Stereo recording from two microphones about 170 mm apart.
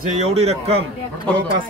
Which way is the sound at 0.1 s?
40° right (ahead or behind).